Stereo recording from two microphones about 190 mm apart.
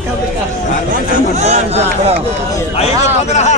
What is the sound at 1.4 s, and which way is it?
Speech, 35° right (ahead or behind).